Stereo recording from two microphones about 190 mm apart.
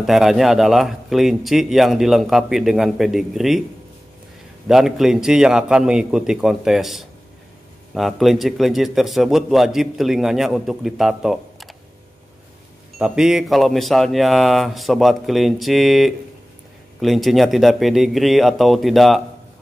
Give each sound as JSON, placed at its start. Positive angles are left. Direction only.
{"t": 0.0, "sound": "a man's voice", "side_deg": 0}
{"t": 4.6, "sound": "a man's voice", "side_deg": 0}
{"t": 13.0, "sound": "a man's voice", "side_deg": -5}